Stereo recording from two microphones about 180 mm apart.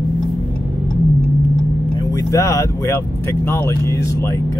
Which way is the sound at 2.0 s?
20° left (ahead or behind).